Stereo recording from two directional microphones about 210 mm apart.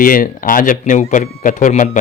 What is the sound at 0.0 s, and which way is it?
Speech, 40° left (ahead or behind).